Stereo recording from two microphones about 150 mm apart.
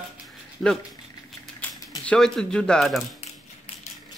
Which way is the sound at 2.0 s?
5° left (ahead or behind).